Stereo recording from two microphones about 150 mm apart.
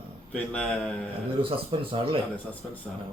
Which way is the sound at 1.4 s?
35° right (ahead or behind).